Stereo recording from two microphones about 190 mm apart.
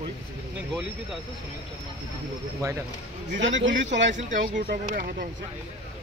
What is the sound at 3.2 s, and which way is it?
Speech, 70° right (ahead or behind).